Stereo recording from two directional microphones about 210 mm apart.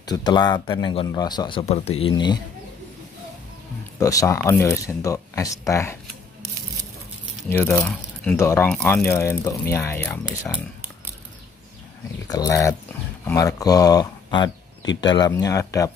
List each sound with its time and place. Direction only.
0.0 s a man's voice: 20° left (ahead or behind)
4.0 s speech: 15° left (ahead or behind)
7.4 s speech: 10° left (ahead or behind)
12.3 s speech: 15° left (ahead or behind)